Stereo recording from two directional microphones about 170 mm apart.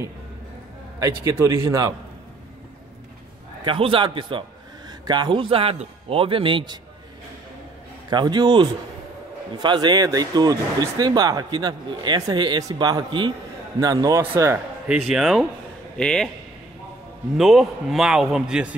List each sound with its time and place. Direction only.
0.9 s a man's voice: 20° right (ahead or behind)
3.6 s a man's voice: 30° right (ahead or behind)
8.1 s a man's voice: 25° right (ahead or behind)
15.0 s a man's voice: centre (ahead or behind)
17.4 s a man's voice: centre (ahead or behind)